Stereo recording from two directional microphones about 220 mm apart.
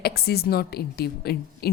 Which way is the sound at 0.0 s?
45° left (ahead or behind).